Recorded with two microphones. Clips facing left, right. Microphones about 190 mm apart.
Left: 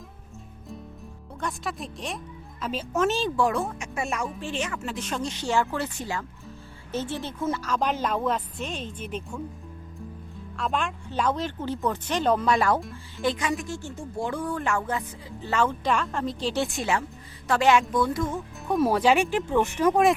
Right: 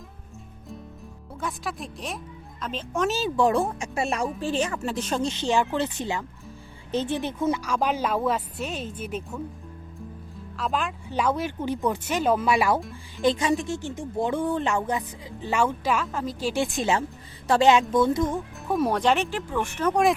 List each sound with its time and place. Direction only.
1.4 s speech: centre (ahead or behind)
3.3 s speech: 25° right (ahead or behind); by 9.4 s 5° right (ahead or behind)
10.6 s speech: centre (ahead or behind)
13.2 s speech: 30° right (ahead or behind)
18.7 s speech: centre (ahead or behind)